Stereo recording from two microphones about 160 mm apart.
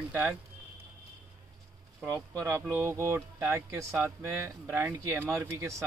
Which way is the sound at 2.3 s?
15° right (ahead or behind).